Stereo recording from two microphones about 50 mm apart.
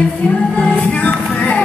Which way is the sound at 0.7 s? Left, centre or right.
Left.